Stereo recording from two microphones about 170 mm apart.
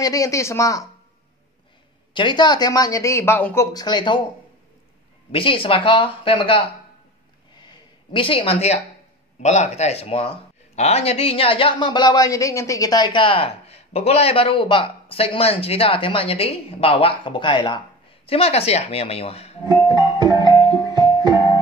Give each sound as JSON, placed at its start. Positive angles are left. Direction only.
{"t": 0.0, "sound": "a woman's voice", "side_deg": 20}
{"t": 2.1, "sound": "a woman's voice", "side_deg": 25}
{"t": 3.7, "sound": "a woman's voice", "side_deg": 25}
{"t": 5.3, "sound": "speech", "side_deg": 30}
{"t": 7.6, "sound": "a sound", "side_deg": 30}
{"t": 9.4, "sound": "speech", "side_deg": 40}
{"t": 19.9, "sound": "music", "side_deg": -25}